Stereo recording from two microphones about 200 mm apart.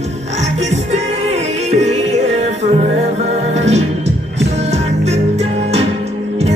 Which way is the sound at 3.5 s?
35° right (ahead or behind).